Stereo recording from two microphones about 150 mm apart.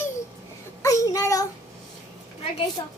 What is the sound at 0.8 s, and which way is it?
Child singing, 20° left (ahead or behind).